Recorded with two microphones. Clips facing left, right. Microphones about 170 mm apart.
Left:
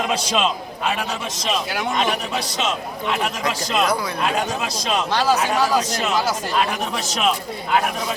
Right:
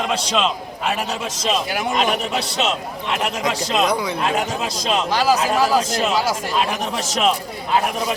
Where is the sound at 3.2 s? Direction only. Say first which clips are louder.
Right 2 dB; centre (ahead or behind).